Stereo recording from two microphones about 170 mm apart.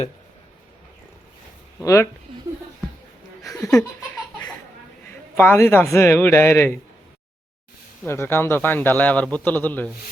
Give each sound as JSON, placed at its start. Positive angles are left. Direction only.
{"t": 1.8, "sound": "a man's voice", "side_deg": 15}
{"t": 3.4, "sound": "chuckle", "side_deg": 20}
{"t": 5.0, "sound": "a man's voice", "side_deg": 10}
{"t": 8.0, "sound": "a man's voice", "side_deg": 15}